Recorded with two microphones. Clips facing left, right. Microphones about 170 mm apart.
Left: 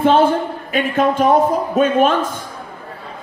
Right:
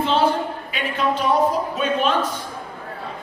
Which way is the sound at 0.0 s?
50° left (ahead or behind).